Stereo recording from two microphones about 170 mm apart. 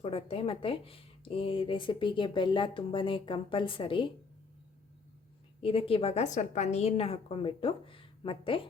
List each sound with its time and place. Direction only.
0.0 s speech: 35° left (ahead or behind)
5.5 s speech: 30° left (ahead or behind)